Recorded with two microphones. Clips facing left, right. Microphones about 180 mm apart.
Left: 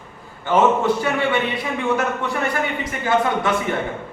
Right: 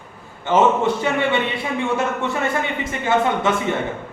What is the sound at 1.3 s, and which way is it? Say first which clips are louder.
Speech: even; 25° right (ahead or behind).